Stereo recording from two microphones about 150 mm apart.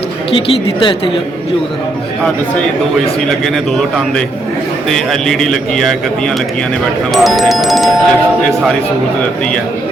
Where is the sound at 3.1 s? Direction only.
5° left (ahead or behind).